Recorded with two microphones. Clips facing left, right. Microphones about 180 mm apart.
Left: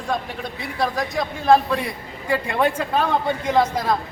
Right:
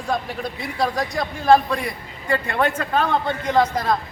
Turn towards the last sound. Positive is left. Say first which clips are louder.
# even
turn(degrees=5)  # may be behind; listen again after turning